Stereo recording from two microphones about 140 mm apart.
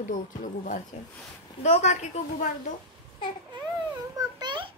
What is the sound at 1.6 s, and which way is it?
Speech, 55° left (ahead or behind).